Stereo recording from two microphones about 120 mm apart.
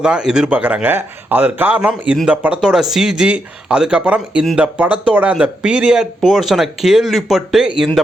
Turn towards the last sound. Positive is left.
turn(degrees=-5)  # may be behind; listen again after turning